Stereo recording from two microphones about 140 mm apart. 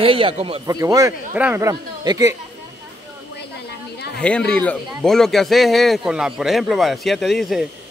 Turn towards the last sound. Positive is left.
turn(degrees=0)  # may be behind; listen again after turning